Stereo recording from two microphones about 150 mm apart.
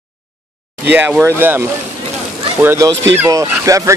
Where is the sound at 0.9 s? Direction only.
10° right (ahead or behind).